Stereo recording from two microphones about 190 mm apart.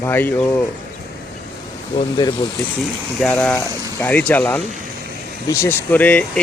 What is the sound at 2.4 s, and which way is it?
Speech, 30° left (ahead or behind).